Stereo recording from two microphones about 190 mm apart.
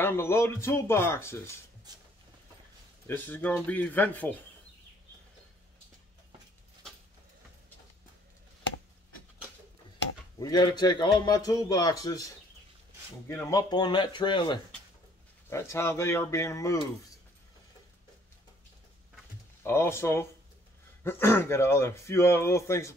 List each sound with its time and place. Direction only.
0.0 s speech: 10° left (ahead or behind)
1.9 s a sound: 20° right (ahead or behind)
3.1 s speech: 10° left (ahead or behind)
10.4 s a man's voice: 20° left (ahead or behind)
13.5 s a man's voice: 20° left (ahead or behind)
19.6 s speech: 15° left (ahead or behind)